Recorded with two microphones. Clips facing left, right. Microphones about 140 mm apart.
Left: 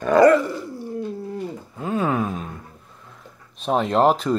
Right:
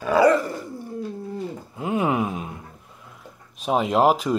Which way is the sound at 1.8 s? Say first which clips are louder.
Even; 15° right (ahead or behind).